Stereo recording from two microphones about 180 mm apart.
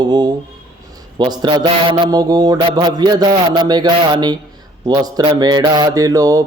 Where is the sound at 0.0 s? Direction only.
25° right (ahead or behind).